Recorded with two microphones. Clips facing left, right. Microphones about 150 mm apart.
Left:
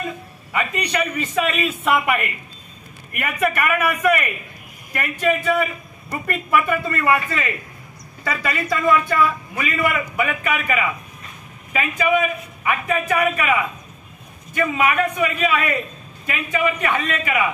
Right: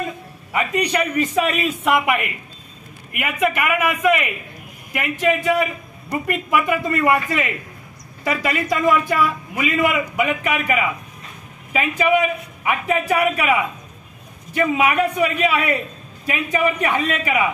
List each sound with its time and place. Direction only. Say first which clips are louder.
0.5 s a man's voice: right 3 dB; 15° right (ahead or behind)
14.6 s a man's voice: right 2 dB; 15° right (ahead or behind)